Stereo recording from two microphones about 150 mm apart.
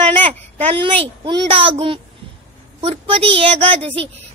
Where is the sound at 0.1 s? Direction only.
45° right (ahead or behind).